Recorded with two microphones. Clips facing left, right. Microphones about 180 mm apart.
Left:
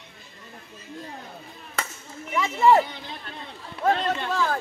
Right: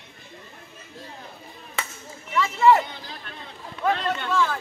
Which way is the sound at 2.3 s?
25° left (ahead or behind).